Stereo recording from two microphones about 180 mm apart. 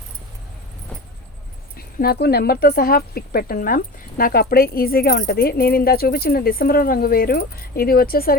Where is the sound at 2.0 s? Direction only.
60° left (ahead or behind).